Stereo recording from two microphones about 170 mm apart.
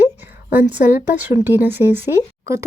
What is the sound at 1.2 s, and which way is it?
Speech, 10° right (ahead or behind).